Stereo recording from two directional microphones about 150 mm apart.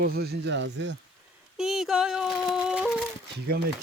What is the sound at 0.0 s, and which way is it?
Speech, 90° right.